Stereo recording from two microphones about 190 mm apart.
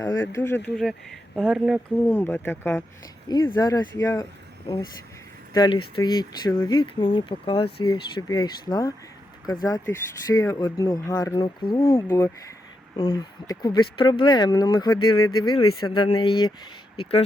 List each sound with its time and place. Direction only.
0.3 s speech: 15° left (ahead or behind)
0.8 s speech: centre (ahead or behind)
2.1 s speech: 10° left (ahead or behind)
5.5 s speech: 25° left (ahead or behind)
15.2 s speech: 90° left
15.5 s speech: 30° left (ahead or behind)